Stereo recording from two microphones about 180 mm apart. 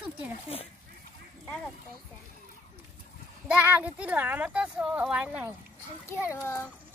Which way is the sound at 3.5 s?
10° right (ahead or behind).